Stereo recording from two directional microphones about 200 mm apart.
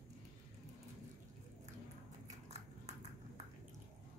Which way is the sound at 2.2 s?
35° right (ahead or behind).